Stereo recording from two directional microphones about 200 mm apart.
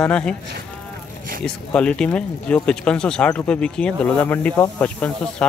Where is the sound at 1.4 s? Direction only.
5° left (ahead or behind).